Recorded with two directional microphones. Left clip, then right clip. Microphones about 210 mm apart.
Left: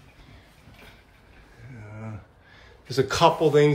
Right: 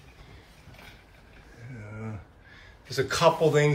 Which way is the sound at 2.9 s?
15° left (ahead or behind).